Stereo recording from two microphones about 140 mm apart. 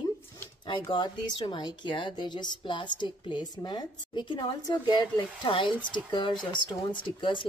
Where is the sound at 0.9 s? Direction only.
35° left (ahead or behind).